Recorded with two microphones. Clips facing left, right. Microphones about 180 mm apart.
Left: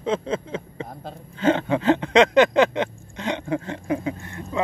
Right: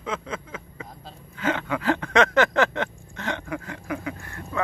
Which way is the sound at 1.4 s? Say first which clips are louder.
Left 6 dB; 30° left (ahead or behind).